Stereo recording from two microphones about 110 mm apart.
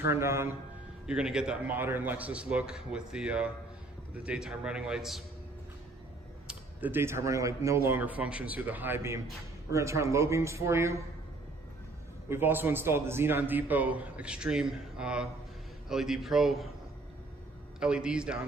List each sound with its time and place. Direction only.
0.0 s speech: 25° right (ahead or behind)
1.0 s a man's voice: 5° right (ahead or behind)
6.5 s speech: 15° right (ahead or behind)
12.3 s a man's voice: 20° right (ahead or behind); by 16.6 s centre (ahead or behind)
17.7 s a man's voice: 10° right (ahead or behind)